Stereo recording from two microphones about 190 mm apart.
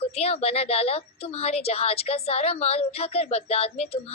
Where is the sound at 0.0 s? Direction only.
30° left (ahead or behind).